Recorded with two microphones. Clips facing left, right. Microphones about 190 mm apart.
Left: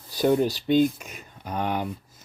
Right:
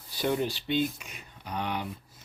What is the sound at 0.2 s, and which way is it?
Speech, 45° left (ahead or behind).